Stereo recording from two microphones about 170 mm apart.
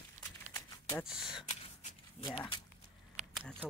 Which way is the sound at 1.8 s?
40° left (ahead or behind).